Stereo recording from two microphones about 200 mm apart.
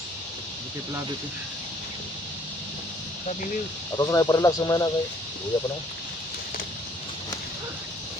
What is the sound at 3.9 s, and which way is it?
Speech, 15° left (ahead or behind).